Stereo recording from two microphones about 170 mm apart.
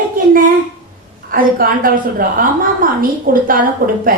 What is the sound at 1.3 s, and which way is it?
A woman's voice, 60° right (ahead or behind).